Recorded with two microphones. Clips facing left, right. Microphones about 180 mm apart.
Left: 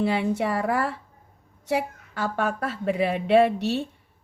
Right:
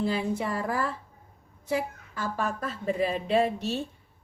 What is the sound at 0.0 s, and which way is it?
A woman's voice, 70° left (ahead or behind).